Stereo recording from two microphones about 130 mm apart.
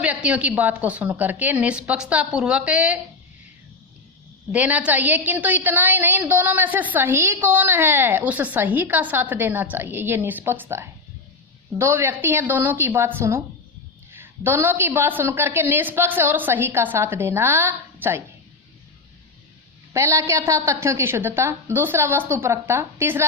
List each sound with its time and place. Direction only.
0.0 s a woman's voice: 10° right (ahead or behind)
4.5 s a woman's voice: 10° right (ahead or behind)
19.9 s a woman's voice: 20° right (ahead or behind)